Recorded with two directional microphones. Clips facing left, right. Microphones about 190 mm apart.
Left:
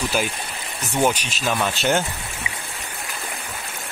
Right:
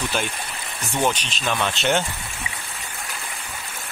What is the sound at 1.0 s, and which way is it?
Speech, 10° left (ahead or behind).